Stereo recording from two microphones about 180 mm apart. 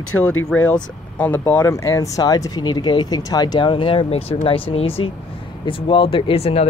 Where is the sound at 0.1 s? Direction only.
10° left (ahead or behind).